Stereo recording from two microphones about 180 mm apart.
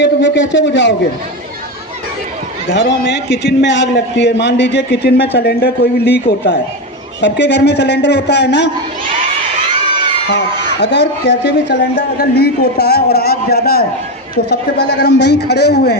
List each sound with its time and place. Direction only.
0.0 s a man's voice: 90° left
2.6 s a man's voice: 90° left; by 8.7 s 70° left (ahead or behind)
10.2 s a man's voice: 80° left